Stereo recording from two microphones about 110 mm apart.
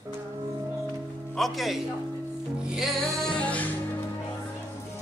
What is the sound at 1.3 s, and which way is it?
Speech, centre (ahead or behind).